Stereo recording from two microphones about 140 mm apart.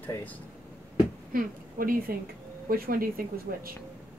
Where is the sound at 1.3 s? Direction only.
90° right.